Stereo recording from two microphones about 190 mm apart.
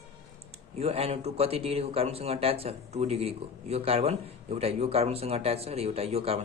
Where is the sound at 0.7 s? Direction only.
30° right (ahead or behind).